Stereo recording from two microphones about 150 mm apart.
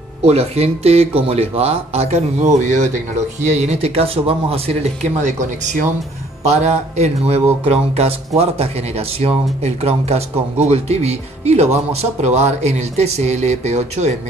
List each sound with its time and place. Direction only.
0.2 s speech: 45° right (ahead or behind)
5.2 s speech: 55° right (ahead or behind)